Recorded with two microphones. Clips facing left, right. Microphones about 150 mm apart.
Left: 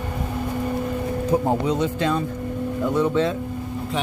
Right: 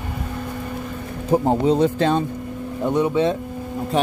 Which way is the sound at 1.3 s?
30° right (ahead or behind).